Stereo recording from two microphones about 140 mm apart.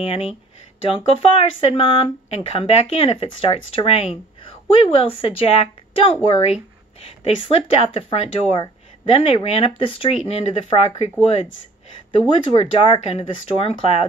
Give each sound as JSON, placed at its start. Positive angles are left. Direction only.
{"t": 0.0, "sound": "a woman's voice", "side_deg": 45}